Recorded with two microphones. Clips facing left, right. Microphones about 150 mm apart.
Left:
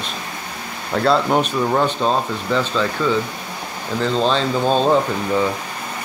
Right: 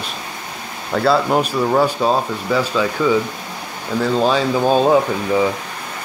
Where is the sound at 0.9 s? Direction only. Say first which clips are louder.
Right 1 dB; 5° right (ahead or behind).